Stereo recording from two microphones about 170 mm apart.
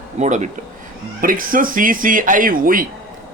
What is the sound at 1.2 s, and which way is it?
Speech, 55° right (ahead or behind).